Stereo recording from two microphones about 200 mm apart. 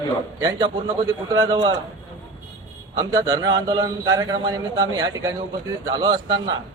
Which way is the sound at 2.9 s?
20° right (ahead or behind).